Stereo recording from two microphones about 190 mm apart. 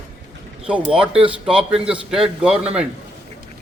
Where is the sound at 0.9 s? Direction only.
5° right (ahead or behind).